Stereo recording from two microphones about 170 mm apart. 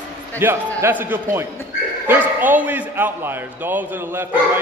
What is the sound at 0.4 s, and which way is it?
A man's voice, 10° right (ahead or behind).